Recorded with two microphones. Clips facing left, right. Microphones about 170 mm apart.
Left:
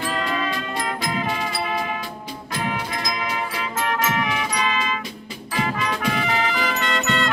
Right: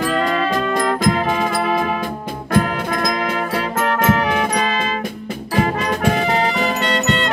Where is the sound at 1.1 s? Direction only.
50° right (ahead or behind).